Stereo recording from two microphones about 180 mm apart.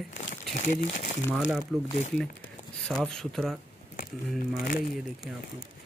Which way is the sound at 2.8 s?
5° left (ahead or behind).